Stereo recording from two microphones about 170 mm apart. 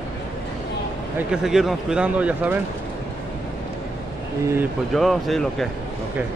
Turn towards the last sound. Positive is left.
turn(degrees=0)  # may be behind; listen again after turning